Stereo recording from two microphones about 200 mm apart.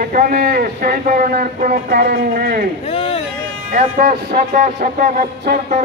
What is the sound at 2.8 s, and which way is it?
Speech, 30° left (ahead or behind).